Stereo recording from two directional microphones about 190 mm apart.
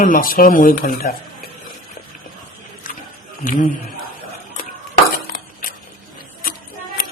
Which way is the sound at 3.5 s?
45° left (ahead or behind).